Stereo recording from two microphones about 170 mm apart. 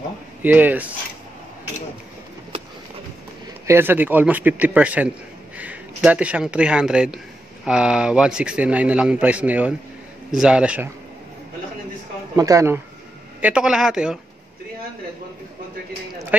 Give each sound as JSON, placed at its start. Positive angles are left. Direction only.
{"t": 0.4, "sound": "a man's voice", "side_deg": -10}
{"t": 3.6, "sound": "a man's voice", "side_deg": -15}
{"t": 12.4, "sound": "speech", "side_deg": -20}
{"t": 13.4, "sound": "a man's voice", "side_deg": -5}